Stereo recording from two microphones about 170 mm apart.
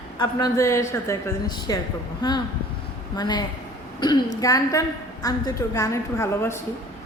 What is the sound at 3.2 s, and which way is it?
A man's voice, 25° left (ahead or behind).